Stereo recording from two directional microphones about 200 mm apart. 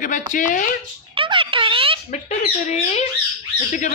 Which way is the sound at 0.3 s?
40° left (ahead or behind).